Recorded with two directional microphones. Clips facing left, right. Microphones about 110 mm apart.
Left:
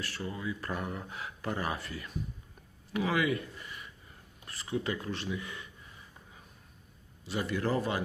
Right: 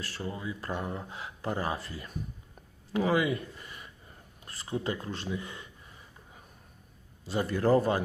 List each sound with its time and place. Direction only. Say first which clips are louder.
0.0 s speech: even; 30° right (ahead or behind)
7.3 s speech: right 6 dB; 35° right (ahead or behind)